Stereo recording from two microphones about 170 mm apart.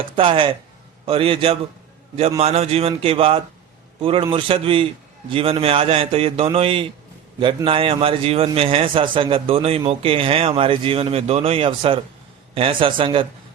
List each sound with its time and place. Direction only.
0.2 s a man's voice: 30° right (ahead or behind)